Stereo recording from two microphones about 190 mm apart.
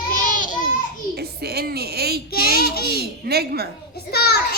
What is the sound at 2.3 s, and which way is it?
Speech, 50° left (ahead or behind).